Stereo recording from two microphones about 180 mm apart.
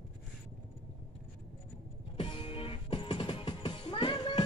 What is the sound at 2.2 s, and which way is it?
Music, 30° left (ahead or behind).